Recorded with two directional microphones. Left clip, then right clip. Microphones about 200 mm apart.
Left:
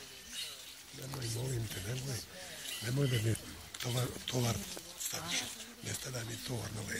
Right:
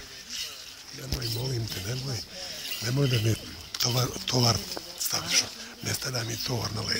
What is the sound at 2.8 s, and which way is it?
A man's voice, 5° right (ahead or behind).